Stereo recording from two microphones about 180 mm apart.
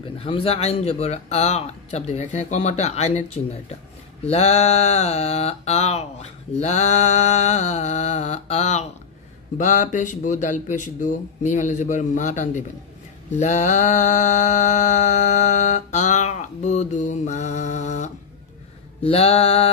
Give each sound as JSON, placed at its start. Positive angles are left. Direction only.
{"t": 0.2, "sound": "mantra", "side_deg": 30}
{"t": 9.6, "sound": "speech", "side_deg": 45}
{"t": 13.3, "sound": "mantra", "side_deg": 40}